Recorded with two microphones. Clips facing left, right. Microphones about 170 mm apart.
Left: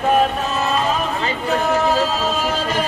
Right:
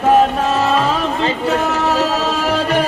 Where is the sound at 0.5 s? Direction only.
90° right.